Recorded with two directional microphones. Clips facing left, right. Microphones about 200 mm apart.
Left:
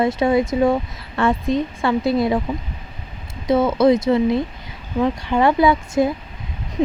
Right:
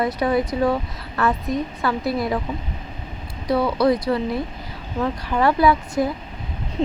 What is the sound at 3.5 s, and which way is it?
Speech, 20° left (ahead or behind).